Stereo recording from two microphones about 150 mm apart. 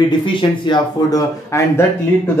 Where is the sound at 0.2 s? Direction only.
30° left (ahead or behind).